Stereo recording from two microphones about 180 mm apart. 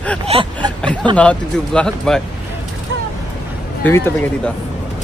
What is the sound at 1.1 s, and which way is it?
Speech, 5° left (ahead or behind).